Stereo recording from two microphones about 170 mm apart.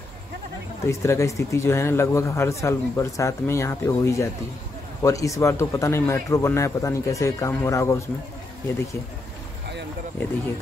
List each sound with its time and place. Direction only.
0.8 s speech: 15° left (ahead or behind)